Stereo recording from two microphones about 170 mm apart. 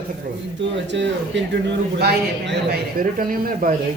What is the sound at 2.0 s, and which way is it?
A man's voice, 70° right (ahead or behind).